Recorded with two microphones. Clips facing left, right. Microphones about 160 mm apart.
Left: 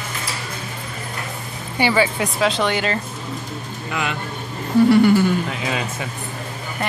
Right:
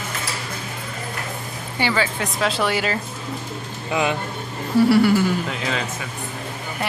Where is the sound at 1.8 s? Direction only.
15° left (ahead or behind).